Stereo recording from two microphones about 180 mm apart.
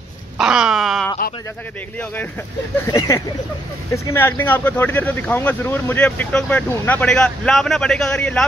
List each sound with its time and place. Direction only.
0.4 s wail: 5° right (ahead or behind)
2.9 s speech: 20° left (ahead or behind)